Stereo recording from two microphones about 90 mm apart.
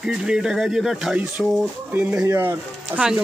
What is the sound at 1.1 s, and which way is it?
Speech, 20° right (ahead or behind).